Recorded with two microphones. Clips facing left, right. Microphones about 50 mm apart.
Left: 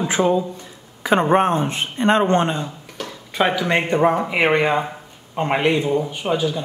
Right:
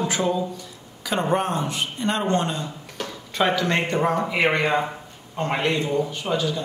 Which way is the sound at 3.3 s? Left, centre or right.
Centre.